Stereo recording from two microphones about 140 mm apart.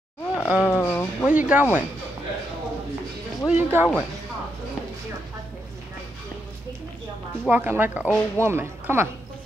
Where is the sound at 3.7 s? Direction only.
10° right (ahead or behind).